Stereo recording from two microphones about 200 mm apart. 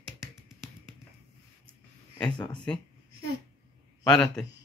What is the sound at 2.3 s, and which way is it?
Speech, 20° left (ahead or behind).